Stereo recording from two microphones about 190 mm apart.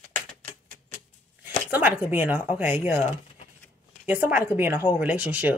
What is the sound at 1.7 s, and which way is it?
Speech, 10° right (ahead or behind).